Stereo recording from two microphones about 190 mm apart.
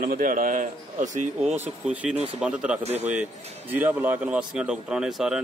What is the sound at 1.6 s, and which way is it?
Speech, 5° right (ahead or behind).